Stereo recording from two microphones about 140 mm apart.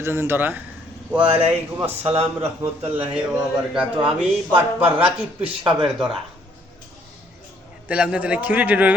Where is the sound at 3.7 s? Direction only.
5° right (ahead or behind).